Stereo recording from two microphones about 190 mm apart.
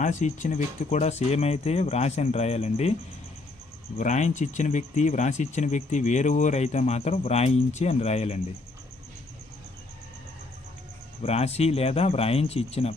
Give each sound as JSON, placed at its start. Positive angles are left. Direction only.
{"t": 0.0, "sound": "speech", "side_deg": 40}
{"t": 3.9, "sound": "speech", "side_deg": 40}
{"t": 11.2, "sound": "speech", "side_deg": 35}